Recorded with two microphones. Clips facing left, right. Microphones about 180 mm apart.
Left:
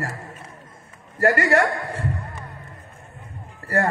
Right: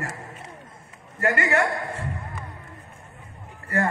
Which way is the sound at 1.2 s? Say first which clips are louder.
Left 5 dB; 40° left (ahead or behind).